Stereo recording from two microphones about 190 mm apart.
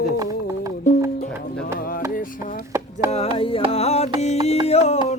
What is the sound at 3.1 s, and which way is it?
Music, 30° left (ahead or behind).